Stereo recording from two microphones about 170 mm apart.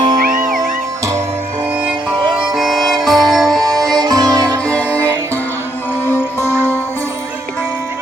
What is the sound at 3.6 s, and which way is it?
Music, 20° right (ahead or behind).